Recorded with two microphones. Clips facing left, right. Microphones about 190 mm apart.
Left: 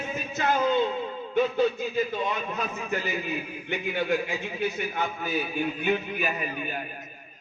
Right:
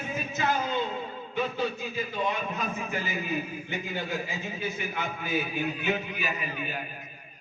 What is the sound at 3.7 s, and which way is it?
Speech, 65° left (ahead or behind).